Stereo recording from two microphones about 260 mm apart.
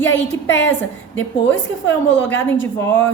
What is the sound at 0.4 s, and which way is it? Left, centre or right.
Speech, left.